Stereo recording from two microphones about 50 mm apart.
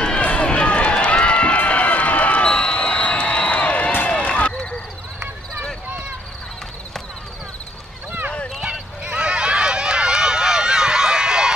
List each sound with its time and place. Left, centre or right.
0.0 s run: left
1.6 s a sound: left
4.2 s basketball bounce: left
9.0 s run: centre